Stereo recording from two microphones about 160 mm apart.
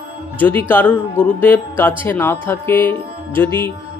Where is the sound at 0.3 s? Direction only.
10° left (ahead or behind).